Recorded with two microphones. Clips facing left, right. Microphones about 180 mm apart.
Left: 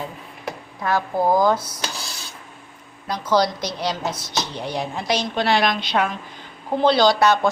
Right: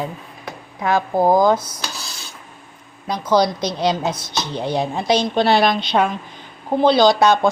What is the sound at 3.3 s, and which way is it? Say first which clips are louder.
A woman's voice: right 3 dB; 20° right (ahead or behind).